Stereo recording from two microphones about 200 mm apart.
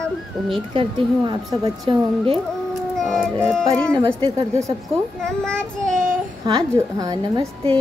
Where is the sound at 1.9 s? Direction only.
25° right (ahead or behind).